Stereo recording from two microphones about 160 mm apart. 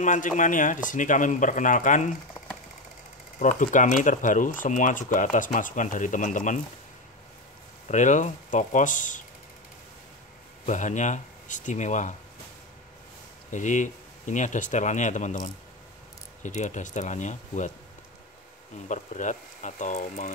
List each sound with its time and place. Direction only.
0.0 s speech: 50° left (ahead or behind)
3.3 s speech: 55° left (ahead or behind)
7.9 s speech: 50° left (ahead or behind)
10.6 s speech: 50° left (ahead or behind)
13.5 s speech: 50° left (ahead or behind)
18.9 s speech: 50° left (ahead or behind)